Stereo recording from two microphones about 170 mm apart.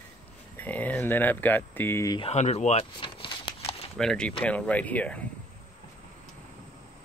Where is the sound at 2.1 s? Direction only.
40° left (ahead or behind).